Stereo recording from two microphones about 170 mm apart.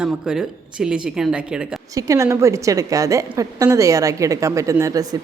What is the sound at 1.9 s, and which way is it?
A woman's voice, 20° right (ahead or behind).